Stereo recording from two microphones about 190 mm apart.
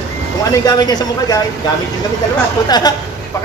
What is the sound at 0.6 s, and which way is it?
Speech, 20° left (ahead or behind).